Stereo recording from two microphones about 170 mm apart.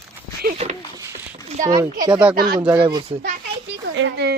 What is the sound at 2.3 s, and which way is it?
Speech, 60° right (ahead or behind).